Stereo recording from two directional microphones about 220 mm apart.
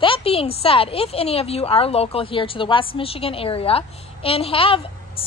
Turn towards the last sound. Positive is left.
turn(degrees=25)  # may be behind; listen again after turning